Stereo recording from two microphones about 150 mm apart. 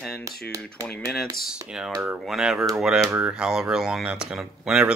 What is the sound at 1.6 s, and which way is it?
Speech, 5° right (ahead or behind).